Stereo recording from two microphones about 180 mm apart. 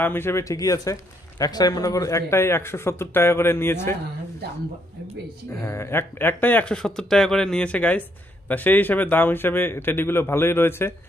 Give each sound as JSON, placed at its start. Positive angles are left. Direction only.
{"t": 0.0, "sound": "speech", "side_deg": 10}
{"t": 5.5, "sound": "speech", "side_deg": 15}